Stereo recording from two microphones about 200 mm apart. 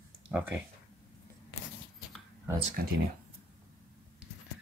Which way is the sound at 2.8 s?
50° right (ahead or behind).